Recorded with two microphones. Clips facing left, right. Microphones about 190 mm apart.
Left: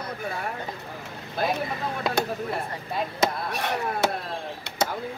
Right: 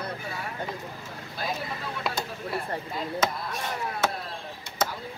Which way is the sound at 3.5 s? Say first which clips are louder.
Left 5 dB; 70° left (ahead or behind).